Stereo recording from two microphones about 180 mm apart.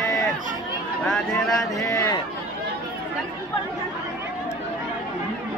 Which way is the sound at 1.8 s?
15° left (ahead or behind).